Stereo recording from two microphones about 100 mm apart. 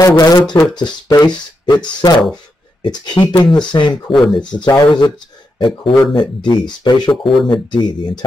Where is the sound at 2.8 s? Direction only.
50° left (ahead or behind).